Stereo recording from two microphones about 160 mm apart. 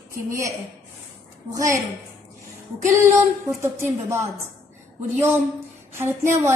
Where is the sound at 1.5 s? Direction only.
20° right (ahead or behind).